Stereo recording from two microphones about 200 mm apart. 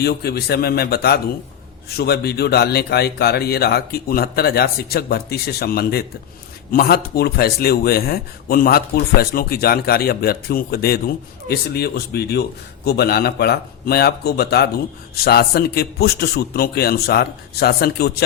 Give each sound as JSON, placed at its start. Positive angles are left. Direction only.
{"t": 0.0, "sound": "speech", "side_deg": 50}